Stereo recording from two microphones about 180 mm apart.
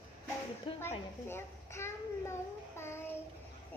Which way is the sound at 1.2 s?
15° left (ahead or behind).